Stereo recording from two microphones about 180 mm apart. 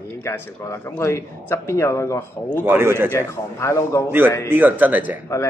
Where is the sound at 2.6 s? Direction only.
15° right (ahead or behind).